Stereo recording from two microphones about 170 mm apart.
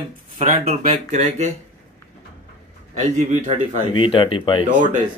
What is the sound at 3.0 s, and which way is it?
Speech, 45° right (ahead or behind).